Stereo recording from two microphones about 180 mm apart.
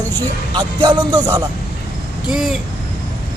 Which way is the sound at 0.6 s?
25° right (ahead or behind).